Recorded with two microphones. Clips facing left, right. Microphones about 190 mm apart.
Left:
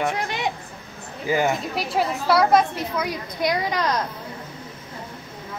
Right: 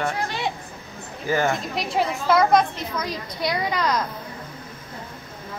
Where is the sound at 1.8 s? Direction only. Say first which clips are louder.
Even; centre (ahead or behind).